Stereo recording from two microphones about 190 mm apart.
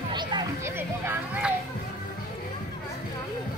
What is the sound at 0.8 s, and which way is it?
Speech, 10° right (ahead or behind).